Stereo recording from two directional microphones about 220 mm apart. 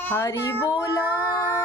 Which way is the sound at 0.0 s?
10° left (ahead or behind).